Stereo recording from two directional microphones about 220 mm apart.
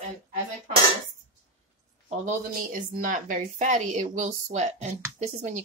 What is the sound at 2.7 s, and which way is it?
A woman's voice, 40° right (ahead or behind).